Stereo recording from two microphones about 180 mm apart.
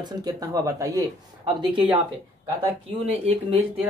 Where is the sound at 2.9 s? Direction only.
35° right (ahead or behind).